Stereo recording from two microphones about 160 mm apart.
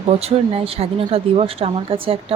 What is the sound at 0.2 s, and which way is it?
Speech, 40° right (ahead or behind).